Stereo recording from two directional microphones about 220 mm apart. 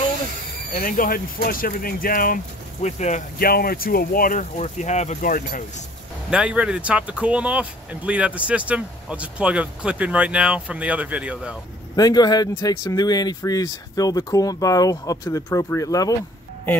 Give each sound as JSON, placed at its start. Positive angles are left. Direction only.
{"t": 0.7, "sound": "speech", "side_deg": 40}
{"t": 6.3, "sound": "speech", "side_deg": -5}
{"t": 11.9, "sound": "speech", "side_deg": 15}